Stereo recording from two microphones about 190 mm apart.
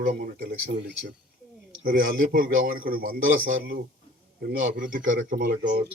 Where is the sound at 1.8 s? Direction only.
50° right (ahead or behind).